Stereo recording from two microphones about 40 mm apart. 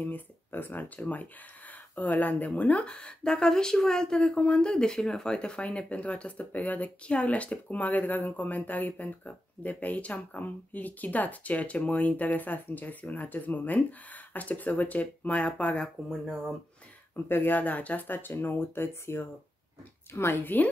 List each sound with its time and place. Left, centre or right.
0.0 s speech: left
0.8 s speech: left
2.8 s speech: left
17.3 s speech: left
18.0 s speech: left
20.4 s speech: left